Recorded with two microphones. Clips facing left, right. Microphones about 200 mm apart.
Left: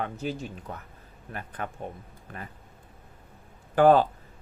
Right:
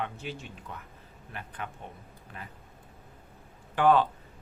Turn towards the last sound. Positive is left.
turn(degrees=40)  # may be behind; listen again after turning